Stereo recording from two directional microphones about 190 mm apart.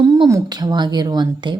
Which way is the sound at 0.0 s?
20° right (ahead or behind).